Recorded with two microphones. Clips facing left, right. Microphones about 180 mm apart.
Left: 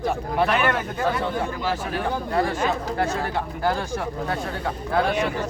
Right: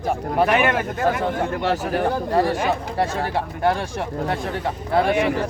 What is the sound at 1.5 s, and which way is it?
Speech, 70° right (ahead or behind).